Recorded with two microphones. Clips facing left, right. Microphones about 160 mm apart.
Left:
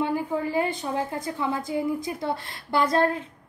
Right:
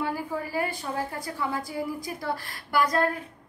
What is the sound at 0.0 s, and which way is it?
A woman's voice, 20° left (ahead or behind).